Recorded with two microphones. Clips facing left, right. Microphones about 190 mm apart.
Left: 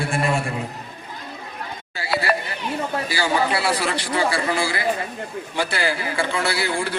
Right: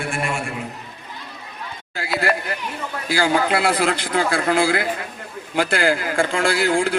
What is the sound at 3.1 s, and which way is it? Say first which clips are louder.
A man's voice: right 4 dB; 50° right (ahead or behind).